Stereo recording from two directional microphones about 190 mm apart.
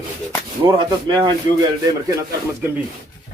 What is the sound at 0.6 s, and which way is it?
Speech, 20° right (ahead or behind).